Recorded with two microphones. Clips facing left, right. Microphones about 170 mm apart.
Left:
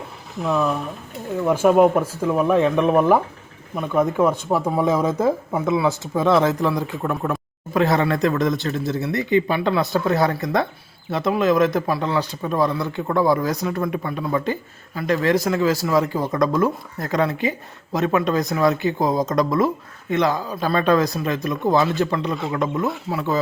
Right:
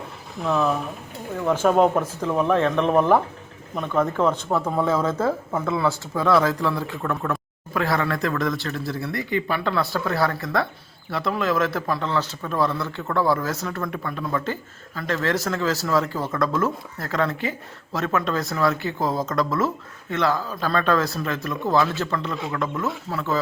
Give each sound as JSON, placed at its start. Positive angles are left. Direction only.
{"t": 0.4, "sound": "speech", "side_deg": 5}